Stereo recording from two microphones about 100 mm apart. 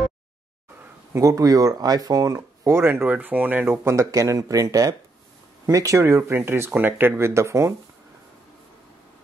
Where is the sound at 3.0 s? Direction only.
15° right (ahead or behind).